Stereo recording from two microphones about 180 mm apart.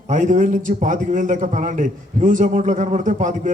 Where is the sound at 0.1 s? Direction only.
45° right (ahead or behind).